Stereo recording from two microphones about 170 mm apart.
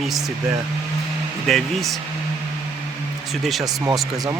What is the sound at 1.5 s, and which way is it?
Speech, centre (ahead or behind).